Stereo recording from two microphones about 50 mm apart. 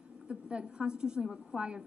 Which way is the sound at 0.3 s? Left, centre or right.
Right.